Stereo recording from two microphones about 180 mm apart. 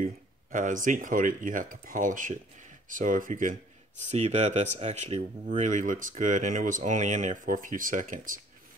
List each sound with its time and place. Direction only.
0.0 s speech: 45° right (ahead or behind)